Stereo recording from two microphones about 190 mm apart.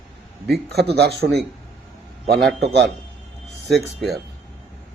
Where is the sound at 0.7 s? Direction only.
60° right (ahead or behind).